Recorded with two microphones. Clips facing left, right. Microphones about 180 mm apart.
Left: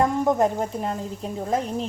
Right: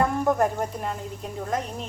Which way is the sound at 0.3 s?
20° left (ahead or behind).